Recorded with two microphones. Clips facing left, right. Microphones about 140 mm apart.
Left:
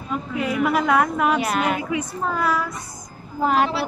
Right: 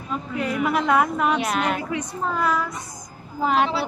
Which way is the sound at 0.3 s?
Centre (ahead or behind).